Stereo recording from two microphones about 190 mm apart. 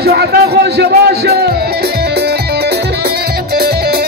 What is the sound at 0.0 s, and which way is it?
Music, 55° right (ahead or behind).